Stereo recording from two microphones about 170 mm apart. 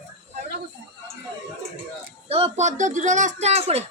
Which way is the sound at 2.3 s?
40° right (ahead or behind).